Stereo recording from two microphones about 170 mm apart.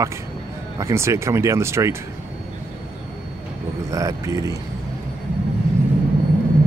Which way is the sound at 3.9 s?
20° right (ahead or behind).